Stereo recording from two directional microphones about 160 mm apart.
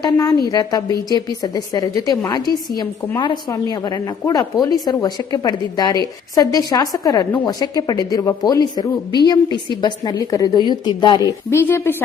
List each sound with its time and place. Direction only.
0.0 s speech: 25° left (ahead or behind)